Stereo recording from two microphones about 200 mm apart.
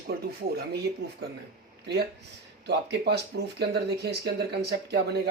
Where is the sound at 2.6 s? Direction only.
55° right (ahead or behind).